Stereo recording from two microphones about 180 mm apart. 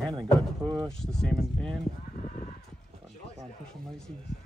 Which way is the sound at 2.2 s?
50° left (ahead or behind).